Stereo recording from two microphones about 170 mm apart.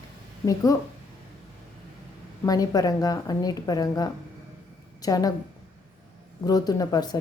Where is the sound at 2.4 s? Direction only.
20° left (ahead or behind).